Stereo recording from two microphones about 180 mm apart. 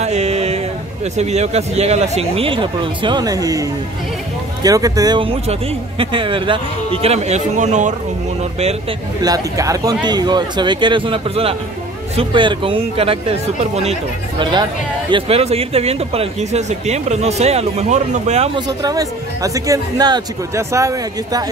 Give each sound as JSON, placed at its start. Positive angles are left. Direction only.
{"t": 0.0, "sound": "music", "side_deg": -35}
{"t": 1.1, "sound": "speech", "side_deg": -40}
{"t": 4.6, "sound": "speech", "side_deg": -20}
{"t": 9.2, "sound": "speech", "side_deg": -20}
{"t": 18.7, "sound": "speech", "side_deg": -20}